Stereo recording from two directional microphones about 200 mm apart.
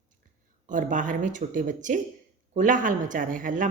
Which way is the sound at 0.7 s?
40° right (ahead or behind).